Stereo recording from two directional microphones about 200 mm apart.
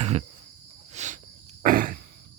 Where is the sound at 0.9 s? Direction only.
35° right (ahead or behind).